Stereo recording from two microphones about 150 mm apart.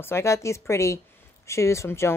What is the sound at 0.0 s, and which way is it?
A woman's voice, 15° left (ahead or behind).